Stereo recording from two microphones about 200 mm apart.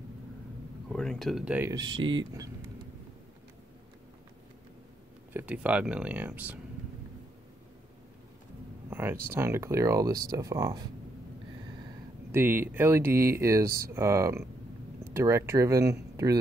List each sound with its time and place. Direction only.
0.8 s speech: centre (ahead or behind)
1.7 s speech: 20° right (ahead or behind)
5.3 s speech: 10° right (ahead or behind)
8.9 s a sound: 10° right (ahead or behind)
9.3 s speech: 15° right (ahead or behind)
12.3 s speech: 10° right (ahead or behind)
13.7 s speech: 50° right (ahead or behind)
13.9 s speech: 15° right (ahead or behind)